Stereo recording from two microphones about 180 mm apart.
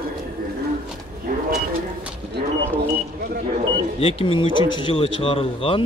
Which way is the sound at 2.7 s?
55° right (ahead or behind).